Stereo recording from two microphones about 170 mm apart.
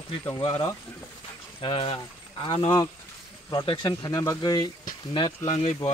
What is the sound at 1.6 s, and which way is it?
Speech, 30° left (ahead or behind).